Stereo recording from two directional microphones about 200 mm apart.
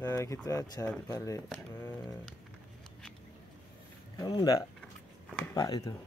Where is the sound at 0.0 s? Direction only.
15° left (ahead or behind).